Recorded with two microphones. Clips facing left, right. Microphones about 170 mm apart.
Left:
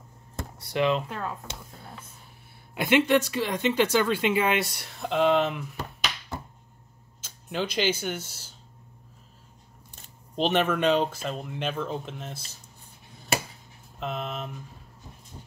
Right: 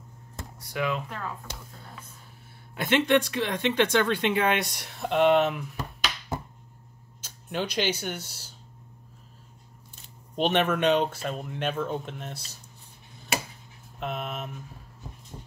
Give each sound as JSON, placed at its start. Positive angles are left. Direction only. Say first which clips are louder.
{"t": 0.6, "sound": "speech", "louder": "left 5 dB", "side_deg": 25}
{"t": 2.7, "sound": "speech", "louder": "left 1 dB", "side_deg": 10}
{"t": 7.4, "sound": "speech", "louder": "left 1 dB", "side_deg": 0}
{"t": 10.3, "sound": "speech", "louder": "even", "side_deg": 0}
{"t": 13.9, "sound": "speech", "louder": "even", "side_deg": -5}